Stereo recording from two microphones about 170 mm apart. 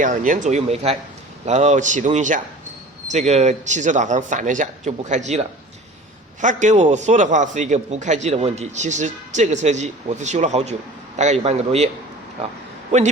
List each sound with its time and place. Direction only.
0.0 s a man's voice: 50° right (ahead or behind)